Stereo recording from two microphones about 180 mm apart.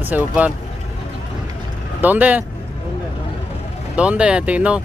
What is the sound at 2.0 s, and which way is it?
Speech, 10° right (ahead or behind).